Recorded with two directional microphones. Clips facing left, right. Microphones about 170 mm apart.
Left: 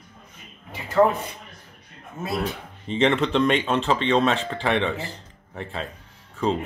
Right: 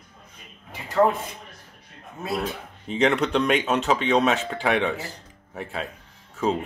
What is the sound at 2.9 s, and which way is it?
Speech, centre (ahead or behind).